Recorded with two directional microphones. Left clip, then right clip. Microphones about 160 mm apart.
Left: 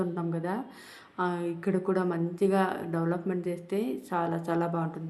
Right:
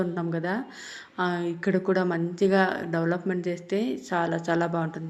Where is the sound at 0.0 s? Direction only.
15° right (ahead or behind).